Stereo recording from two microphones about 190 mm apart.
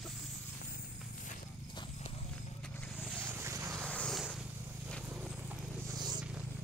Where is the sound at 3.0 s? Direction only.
10° right (ahead or behind).